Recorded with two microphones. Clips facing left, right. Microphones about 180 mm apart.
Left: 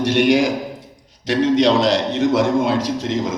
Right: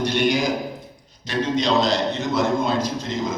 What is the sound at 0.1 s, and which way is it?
A man's voice, 90° left.